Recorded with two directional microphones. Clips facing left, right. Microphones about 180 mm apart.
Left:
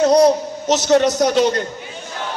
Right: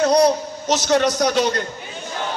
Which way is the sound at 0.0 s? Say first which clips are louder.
Left 3 dB; 20° left (ahead or behind).